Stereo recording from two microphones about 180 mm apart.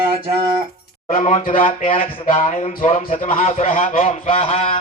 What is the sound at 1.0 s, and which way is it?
Speech, 45° left (ahead or behind).